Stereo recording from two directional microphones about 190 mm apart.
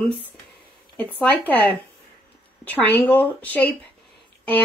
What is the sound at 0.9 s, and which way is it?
Speech, 5° left (ahead or behind).